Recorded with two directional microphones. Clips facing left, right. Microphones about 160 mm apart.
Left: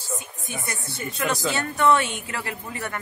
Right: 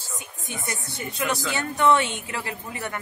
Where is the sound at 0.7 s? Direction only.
15° right (ahead or behind).